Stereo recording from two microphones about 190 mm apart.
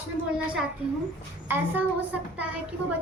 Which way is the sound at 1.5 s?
10° right (ahead or behind).